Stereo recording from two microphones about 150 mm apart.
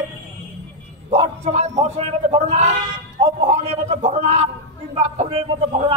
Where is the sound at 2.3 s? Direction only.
45° right (ahead or behind).